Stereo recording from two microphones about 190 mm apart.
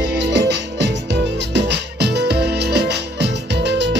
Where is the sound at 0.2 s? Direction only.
65° right (ahead or behind).